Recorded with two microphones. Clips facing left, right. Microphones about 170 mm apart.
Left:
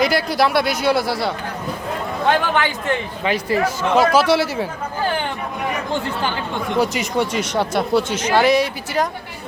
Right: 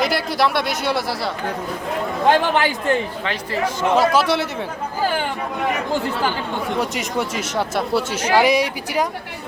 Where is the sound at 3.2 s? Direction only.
10° left (ahead or behind).